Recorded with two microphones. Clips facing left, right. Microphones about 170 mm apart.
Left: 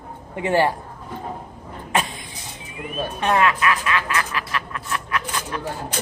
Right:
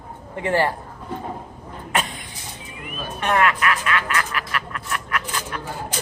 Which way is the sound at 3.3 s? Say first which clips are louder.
Even; 20° left (ahead or behind).